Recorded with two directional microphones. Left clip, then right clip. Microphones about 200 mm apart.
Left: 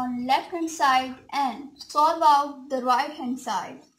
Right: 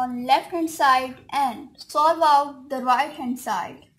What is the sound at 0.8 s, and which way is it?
A woman's voice, 40° right (ahead or behind).